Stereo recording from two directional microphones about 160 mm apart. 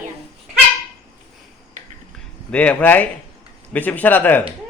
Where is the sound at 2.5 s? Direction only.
10° left (ahead or behind).